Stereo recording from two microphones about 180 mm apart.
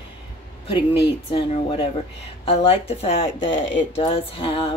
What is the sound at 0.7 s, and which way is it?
Speech, 30° left (ahead or behind).